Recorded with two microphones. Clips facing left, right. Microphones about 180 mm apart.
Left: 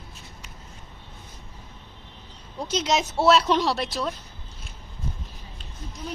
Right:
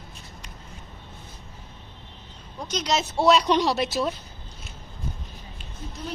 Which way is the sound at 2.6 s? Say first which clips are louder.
Left 2 dB; 25° left (ahead or behind).